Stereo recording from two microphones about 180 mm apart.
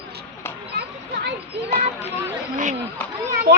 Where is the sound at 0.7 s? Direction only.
65° right (ahead or behind).